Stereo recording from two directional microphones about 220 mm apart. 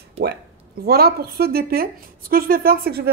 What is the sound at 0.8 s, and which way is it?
A woman's voice, 45° right (ahead or behind).